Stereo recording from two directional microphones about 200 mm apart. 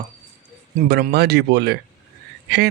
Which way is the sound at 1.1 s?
55° right (ahead or behind).